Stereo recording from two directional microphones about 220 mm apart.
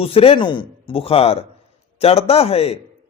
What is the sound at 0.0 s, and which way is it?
A man's voice, 25° left (ahead or behind).